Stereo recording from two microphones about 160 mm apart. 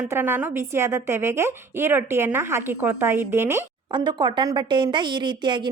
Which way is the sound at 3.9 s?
30° right (ahead or behind).